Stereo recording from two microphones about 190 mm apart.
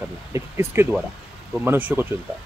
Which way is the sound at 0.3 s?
15° right (ahead or behind).